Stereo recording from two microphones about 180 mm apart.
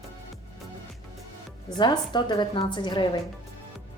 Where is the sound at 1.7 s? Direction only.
25° left (ahead or behind).